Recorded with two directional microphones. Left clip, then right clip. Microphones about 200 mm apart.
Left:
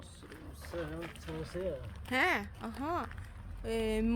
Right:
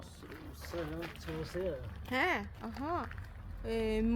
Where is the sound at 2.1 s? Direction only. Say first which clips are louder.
Left 2 dB; 15° left (ahead or behind).